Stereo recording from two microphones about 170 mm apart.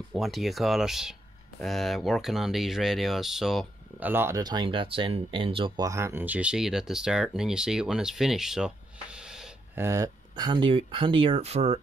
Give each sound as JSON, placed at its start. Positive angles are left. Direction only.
{"t": 0.1, "sound": "speech", "side_deg": 0}
{"t": 4.1, "sound": "speech", "side_deg": -15}
{"t": 5.9, "sound": "speech", "side_deg": -15}
{"t": 9.8, "sound": "speech", "side_deg": -20}